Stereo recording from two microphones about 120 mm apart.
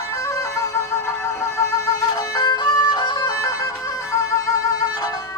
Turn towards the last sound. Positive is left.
turn(degrees=30)  # may be behind; listen again after turning